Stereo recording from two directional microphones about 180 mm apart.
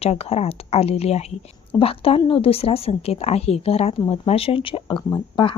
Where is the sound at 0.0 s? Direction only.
35° left (ahead or behind).